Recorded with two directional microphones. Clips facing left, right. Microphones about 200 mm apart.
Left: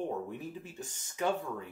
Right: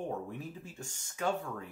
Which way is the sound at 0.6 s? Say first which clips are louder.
Left 2 dB; 20° left (ahead or behind).